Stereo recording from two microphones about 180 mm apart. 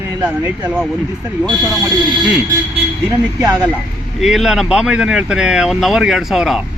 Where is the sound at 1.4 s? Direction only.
20° right (ahead or behind).